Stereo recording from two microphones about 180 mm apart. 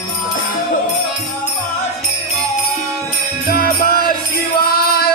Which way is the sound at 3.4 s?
55° left (ahead or behind).